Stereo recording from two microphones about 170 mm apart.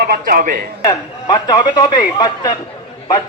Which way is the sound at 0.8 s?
25° left (ahead or behind).